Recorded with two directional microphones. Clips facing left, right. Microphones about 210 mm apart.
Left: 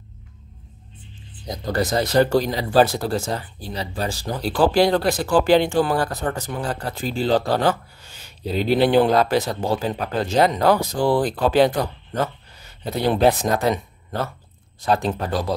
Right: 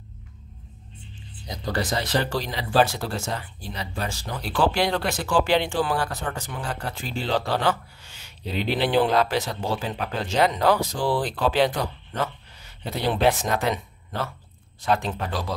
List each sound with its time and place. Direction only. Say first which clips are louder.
1.7 s speech: left 4 dB; 45° left (ahead or behind)
13.1 s speech: left 4 dB; 40° left (ahead or behind)